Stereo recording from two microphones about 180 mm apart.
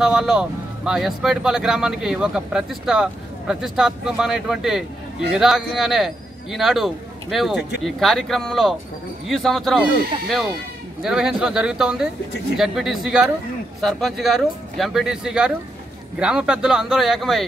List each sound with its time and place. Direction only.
0.0 s speech: 5° right (ahead or behind)